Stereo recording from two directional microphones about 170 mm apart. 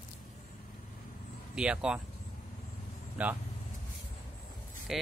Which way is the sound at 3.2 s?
10° right (ahead or behind).